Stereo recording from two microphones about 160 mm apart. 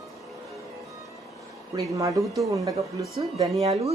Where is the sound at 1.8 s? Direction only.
20° right (ahead or behind).